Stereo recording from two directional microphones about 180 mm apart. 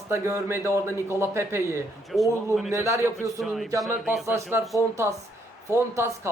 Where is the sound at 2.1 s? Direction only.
10° left (ahead or behind).